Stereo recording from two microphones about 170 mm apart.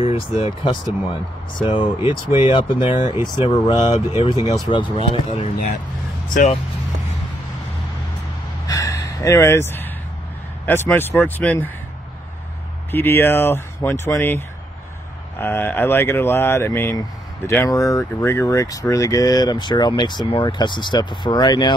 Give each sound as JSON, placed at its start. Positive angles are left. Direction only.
{"t": 0.0, "sound": "speech", "side_deg": 35}
{"t": 3.9, "sound": "speech", "side_deg": 40}
{"t": 4.3, "sound": "speech", "side_deg": 25}
{"t": 6.2, "sound": "speech", "side_deg": 50}
{"t": 8.6, "sound": "gasp", "side_deg": 20}
{"t": 10.6, "sound": "speech", "side_deg": 10}
{"t": 12.9, "sound": "speech", "side_deg": 15}